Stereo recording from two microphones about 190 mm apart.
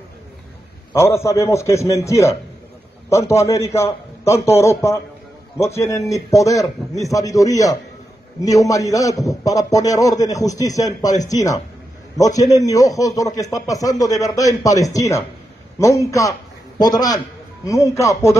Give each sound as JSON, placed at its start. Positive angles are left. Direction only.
{"t": 0.9, "sound": "a man's voice", "side_deg": 15}